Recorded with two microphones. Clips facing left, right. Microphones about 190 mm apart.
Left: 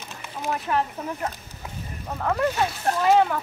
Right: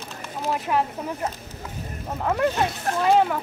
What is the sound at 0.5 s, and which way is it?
Speech, 10° right (ahead or behind).